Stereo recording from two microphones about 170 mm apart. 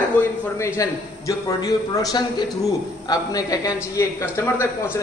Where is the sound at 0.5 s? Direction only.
15° left (ahead or behind).